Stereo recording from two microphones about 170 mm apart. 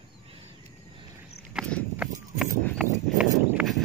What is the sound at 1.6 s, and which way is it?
Horse, 5° right (ahead or behind).